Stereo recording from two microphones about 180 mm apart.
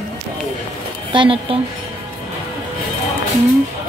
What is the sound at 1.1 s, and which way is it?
Speech, 30° right (ahead or behind).